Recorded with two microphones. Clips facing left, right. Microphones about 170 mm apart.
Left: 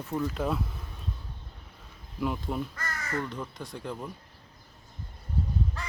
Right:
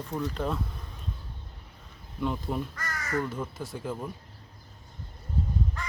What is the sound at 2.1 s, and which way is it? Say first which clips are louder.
Speech: even; 5° left (ahead or behind).